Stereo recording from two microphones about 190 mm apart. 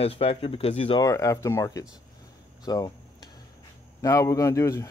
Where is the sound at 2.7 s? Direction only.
20° left (ahead or behind).